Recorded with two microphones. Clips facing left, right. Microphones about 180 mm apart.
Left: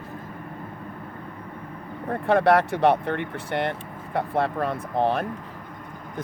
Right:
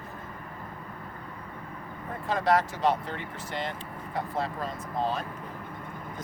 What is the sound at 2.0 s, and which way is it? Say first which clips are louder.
Speech: left 7 dB; 65° left (ahead or behind).